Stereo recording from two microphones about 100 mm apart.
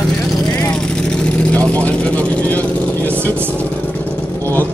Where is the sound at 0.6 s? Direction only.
10° left (ahead or behind).